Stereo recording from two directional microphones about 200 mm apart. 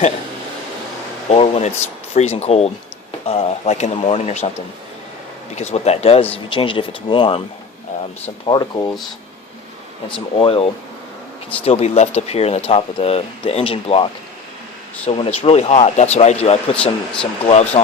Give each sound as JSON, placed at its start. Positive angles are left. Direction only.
{"t": 1.3, "sound": "speech", "side_deg": 30}
{"t": 5.5, "sound": "speech", "side_deg": 35}
{"t": 8.4, "sound": "speech", "side_deg": 20}
{"t": 10.3, "sound": "speech", "side_deg": 30}
{"t": 16.7, "sound": "speech", "side_deg": 5}
{"t": 17.4, "sound": "speech", "side_deg": 35}